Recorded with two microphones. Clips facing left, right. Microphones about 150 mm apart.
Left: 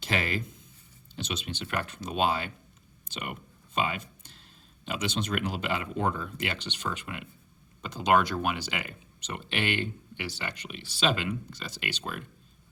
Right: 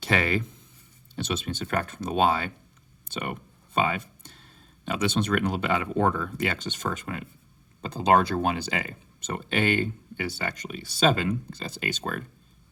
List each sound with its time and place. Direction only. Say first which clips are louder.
1.1 s speech: right 5 dB; 50° right (ahead or behind)